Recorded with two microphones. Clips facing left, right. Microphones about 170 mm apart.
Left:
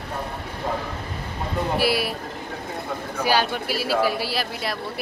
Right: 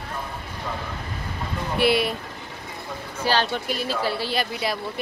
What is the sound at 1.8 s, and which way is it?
Speech, 5° left (ahead or behind).